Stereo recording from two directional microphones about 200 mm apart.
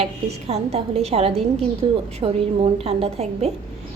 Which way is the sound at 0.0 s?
30° right (ahead or behind).